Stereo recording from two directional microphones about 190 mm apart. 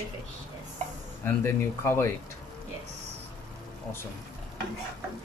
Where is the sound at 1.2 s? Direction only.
10° left (ahead or behind).